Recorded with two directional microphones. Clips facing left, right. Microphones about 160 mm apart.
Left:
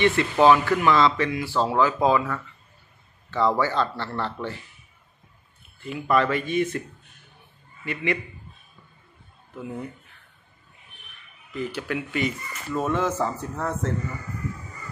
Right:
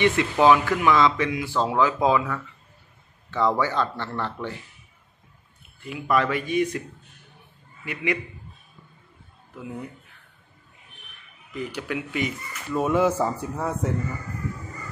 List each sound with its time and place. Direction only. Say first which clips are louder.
0.0 s speech: left 1 dB; 15° right (ahead or behind)
3.3 s speech: even; 15° right (ahead or behind)
5.9 s speech: left 1 dB; 10° right (ahead or behind)
7.8 s speech: even; 10° right (ahead or behind)
9.6 s speech: left 2 dB; 5° right (ahead or behind)
11.5 s speech: left 1 dB; 10° right (ahead or behind)